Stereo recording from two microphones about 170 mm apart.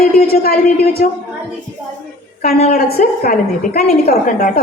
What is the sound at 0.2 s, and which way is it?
Speech, 60° left (ahead or behind).